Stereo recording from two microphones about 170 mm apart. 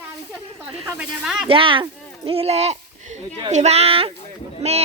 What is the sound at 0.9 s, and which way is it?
Speech, 5° right (ahead or behind).